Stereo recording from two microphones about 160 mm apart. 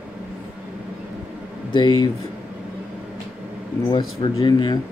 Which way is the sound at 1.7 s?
30° left (ahead or behind).